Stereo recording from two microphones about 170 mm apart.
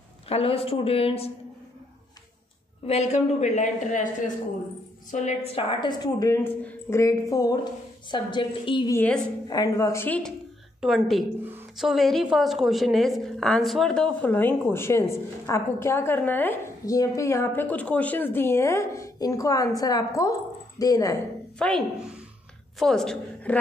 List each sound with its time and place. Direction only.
0.3 s speech: 35° left (ahead or behind)
2.9 s a woman's voice: 40° left (ahead or behind)
5.1 s a woman's voice: 45° left (ahead or behind); by 8.9 s 30° left (ahead or behind)
8.9 s a woman's voice: 10° left (ahead or behind)
9.5 s a woman's voice: 20° left (ahead or behind)
21.5 s a woman's voice: 5° left (ahead or behind)